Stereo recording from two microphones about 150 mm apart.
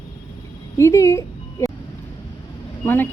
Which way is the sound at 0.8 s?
20° left (ahead or behind).